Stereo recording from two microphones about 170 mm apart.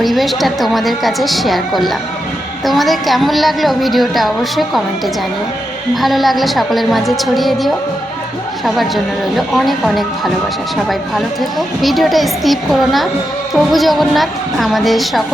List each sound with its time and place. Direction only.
0.0 s a woman's voice: centre (ahead or behind)